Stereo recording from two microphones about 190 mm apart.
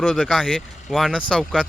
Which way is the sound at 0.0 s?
Centre (ahead or behind).